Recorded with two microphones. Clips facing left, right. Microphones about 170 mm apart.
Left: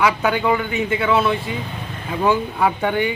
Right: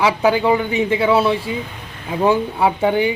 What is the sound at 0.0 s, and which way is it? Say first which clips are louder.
A man's voice: right 3 dB; 30° right (ahead or behind).